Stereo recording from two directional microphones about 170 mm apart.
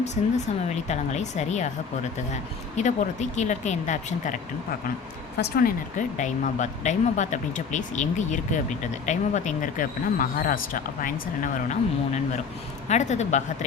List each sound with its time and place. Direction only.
0.0 s speech: 40° left (ahead or behind)
5.4 s speech: 60° left (ahead or behind)